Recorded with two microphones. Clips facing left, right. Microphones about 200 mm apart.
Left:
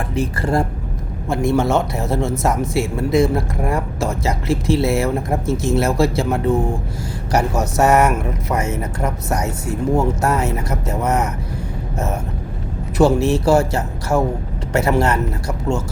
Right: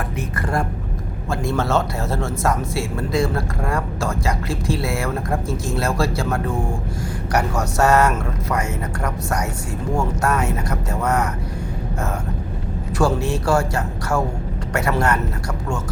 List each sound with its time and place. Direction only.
0.2 s speech: 25° left (ahead or behind)
13.2 s speech: 20° left (ahead or behind)